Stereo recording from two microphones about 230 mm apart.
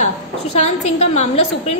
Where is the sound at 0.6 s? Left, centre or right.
Left.